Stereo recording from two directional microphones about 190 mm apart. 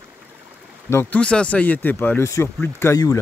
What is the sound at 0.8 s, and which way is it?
Speech, 10° left (ahead or behind).